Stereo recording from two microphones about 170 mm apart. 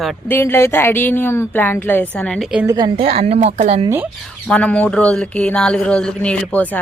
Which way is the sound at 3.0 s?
40° right (ahead or behind).